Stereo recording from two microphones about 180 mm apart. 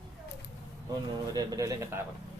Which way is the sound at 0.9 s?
20° right (ahead or behind).